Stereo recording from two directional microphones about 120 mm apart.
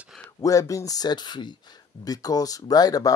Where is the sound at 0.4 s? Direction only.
30° left (ahead or behind).